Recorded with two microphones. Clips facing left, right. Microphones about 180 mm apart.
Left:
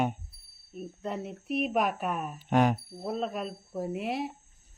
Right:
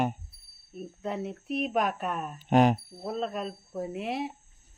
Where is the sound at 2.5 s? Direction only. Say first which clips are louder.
Right 3 dB; 20° right (ahead or behind).